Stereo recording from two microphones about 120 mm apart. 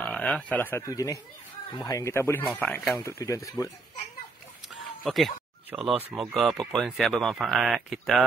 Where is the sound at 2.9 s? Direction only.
25° left (ahead or behind).